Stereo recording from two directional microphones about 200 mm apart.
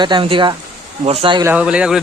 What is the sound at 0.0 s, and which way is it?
Speech, 25° right (ahead or behind).